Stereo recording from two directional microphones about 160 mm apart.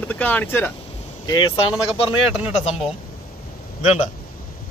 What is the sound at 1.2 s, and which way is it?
Speech, 30° left (ahead or behind).